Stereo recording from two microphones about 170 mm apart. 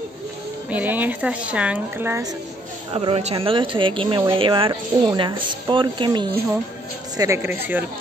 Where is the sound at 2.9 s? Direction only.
35° right (ahead or behind); by 7.9 s 10° right (ahead or behind).